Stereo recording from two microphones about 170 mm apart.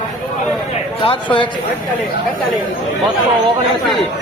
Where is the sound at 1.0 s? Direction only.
30° left (ahead or behind).